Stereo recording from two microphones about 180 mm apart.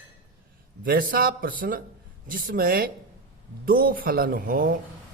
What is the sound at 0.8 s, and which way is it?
Speech, 50° right (ahead or behind).